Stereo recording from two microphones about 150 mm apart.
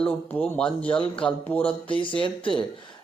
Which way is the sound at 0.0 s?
10° left (ahead or behind).